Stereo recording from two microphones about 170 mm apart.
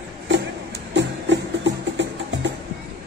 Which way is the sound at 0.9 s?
90° right.